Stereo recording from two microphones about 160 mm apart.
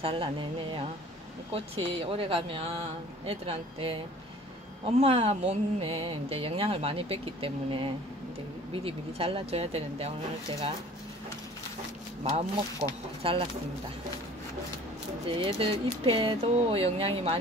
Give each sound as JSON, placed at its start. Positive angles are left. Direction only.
{"t": 0.0, "sound": "speech", "side_deg": -30}
{"t": 13.2, "sound": "speech", "side_deg": -35}
{"t": 15.3, "sound": "speech", "side_deg": -35}